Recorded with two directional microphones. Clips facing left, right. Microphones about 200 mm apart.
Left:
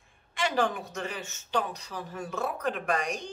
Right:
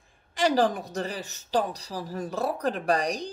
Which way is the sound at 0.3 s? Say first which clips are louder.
Right 5 dB; 35° right (ahead or behind).